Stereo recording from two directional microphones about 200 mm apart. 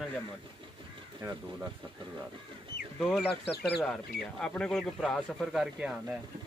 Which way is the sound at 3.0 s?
5° left (ahead or behind).